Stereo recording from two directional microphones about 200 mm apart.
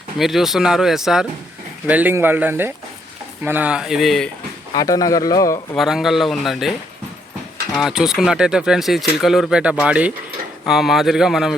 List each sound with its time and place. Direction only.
0.2 s speech: centre (ahead or behind)
4.7 s speech: 20° left (ahead or behind)
5.7 s speech: centre (ahead or behind)
7.8 s speech: centre (ahead or behind)